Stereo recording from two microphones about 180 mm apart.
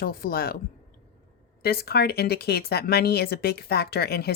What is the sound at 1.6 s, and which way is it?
Speech, 60° left (ahead or behind).